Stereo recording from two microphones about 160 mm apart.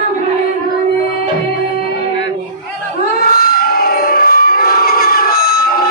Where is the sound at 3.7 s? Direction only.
65° left (ahead or behind).